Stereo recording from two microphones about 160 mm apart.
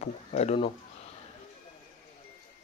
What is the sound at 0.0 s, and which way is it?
Speech, 45° left (ahead or behind).